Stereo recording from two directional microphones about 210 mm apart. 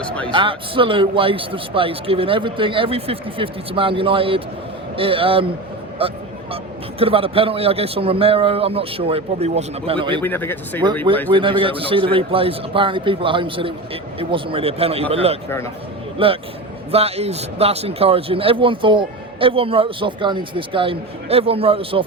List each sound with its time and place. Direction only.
0.0 s speech: 5° left (ahead or behind)
0.3 s a man's voice: 25° right (ahead or behind)
10.2 s speech: 10° left (ahead or behind)
11.3 s a man's voice: 25° right (ahead or behind)
15.4 s speech: 10° left (ahead or behind)
16.1 s a man's voice: 25° right (ahead or behind)